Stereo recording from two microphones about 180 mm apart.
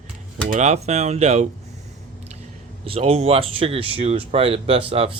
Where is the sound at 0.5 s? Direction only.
40° right (ahead or behind).